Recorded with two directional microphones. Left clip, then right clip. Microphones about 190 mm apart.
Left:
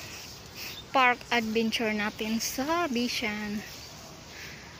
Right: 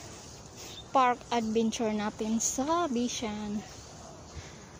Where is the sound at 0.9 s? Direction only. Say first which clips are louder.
Left 2 dB; 15° right (ahead or behind).